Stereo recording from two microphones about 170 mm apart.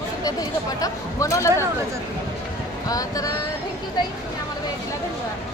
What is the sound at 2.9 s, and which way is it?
Speech, 20° left (ahead or behind).